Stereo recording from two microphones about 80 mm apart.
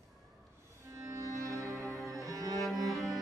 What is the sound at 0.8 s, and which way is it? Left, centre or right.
Music, right.